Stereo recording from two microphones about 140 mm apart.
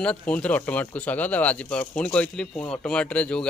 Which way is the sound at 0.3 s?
10° left (ahead or behind).